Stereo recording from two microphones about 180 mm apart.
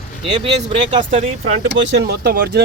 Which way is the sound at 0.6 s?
35° right (ahead or behind).